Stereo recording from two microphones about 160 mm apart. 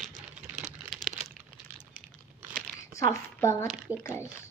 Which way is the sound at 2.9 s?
20° left (ahead or behind).